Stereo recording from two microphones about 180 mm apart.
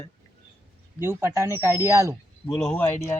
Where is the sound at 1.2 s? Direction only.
15° right (ahead or behind).